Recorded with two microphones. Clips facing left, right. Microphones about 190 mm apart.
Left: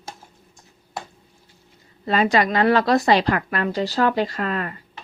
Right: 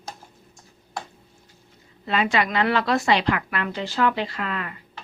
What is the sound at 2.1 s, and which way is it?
A woman's voice, 40° left (ahead or behind).